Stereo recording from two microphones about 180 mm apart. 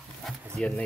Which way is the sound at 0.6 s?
Centre (ahead or behind).